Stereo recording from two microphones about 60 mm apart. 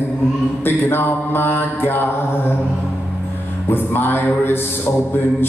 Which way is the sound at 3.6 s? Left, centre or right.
Left.